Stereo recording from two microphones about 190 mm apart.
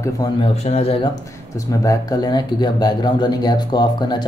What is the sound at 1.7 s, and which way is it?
Speech, 20° left (ahead or behind).